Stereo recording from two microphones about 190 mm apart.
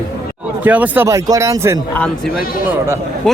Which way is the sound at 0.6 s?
10° right (ahead or behind).